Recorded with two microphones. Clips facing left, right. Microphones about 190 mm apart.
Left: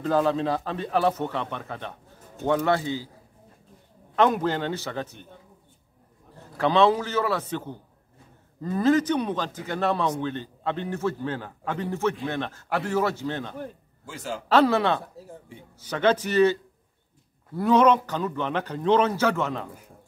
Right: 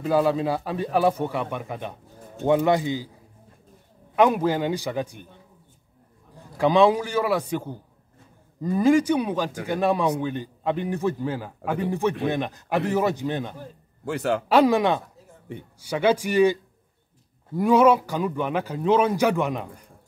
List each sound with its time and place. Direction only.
0.0 s a man's voice: 10° right (ahead or behind)
4.1 s a man's voice: 10° right (ahead or behind)
6.3 s a man's voice: 15° right (ahead or behind)
14.0 s a man's voice: 65° right (ahead or behind)
14.5 s a man's voice: 15° right (ahead or behind)
15.5 s a man's voice: 60° right (ahead or behind)
15.8 s a man's voice: 10° right (ahead or behind)
17.6 s a man's voice: 10° right (ahead or behind)